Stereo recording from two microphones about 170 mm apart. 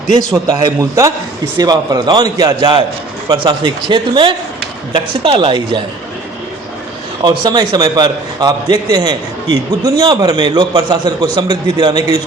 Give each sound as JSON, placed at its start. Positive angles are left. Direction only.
{"t": 0.4, "sound": "a man's voice", "side_deg": -20}
{"t": 7.3, "sound": "a man's voice", "side_deg": -25}